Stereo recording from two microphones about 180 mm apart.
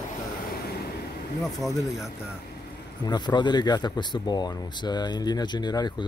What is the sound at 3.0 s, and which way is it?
Speech, 25° left (ahead or behind).